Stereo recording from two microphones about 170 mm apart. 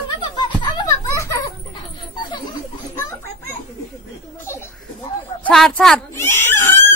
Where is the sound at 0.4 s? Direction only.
25° left (ahead or behind).